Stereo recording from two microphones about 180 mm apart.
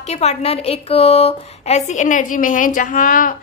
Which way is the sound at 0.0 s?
35° left (ahead or behind).